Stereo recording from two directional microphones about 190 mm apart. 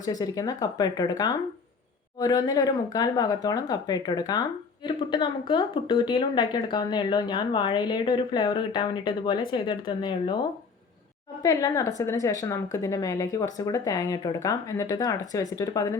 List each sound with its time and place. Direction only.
0.0 s a woman's voice: 20° left (ahead or behind)
11.4 s a woman's voice: 20° left (ahead or behind)